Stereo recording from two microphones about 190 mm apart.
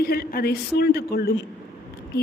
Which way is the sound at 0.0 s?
55° left (ahead or behind).